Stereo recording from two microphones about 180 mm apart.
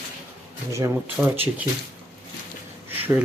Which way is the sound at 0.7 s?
15° right (ahead or behind).